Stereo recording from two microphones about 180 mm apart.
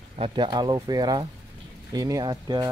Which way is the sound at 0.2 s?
25° right (ahead or behind).